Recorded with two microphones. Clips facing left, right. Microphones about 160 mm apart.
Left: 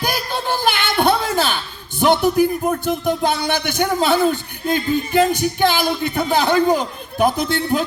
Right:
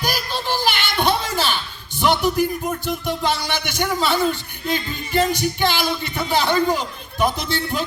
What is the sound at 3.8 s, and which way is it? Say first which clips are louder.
A man's voice: left 3 dB; 50° left (ahead or behind).